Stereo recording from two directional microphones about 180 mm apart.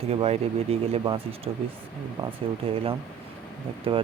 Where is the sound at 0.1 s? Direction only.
35° right (ahead or behind).